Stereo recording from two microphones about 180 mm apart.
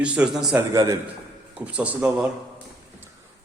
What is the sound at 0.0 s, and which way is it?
Speech, 5° right (ahead or behind).